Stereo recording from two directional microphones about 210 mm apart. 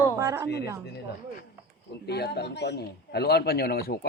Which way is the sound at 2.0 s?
50° left (ahead or behind).